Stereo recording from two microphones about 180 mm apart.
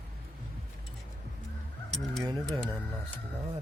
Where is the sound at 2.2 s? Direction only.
20° right (ahead or behind).